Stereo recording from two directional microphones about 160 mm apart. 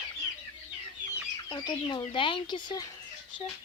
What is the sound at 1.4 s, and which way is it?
Speech, 25° left (ahead or behind).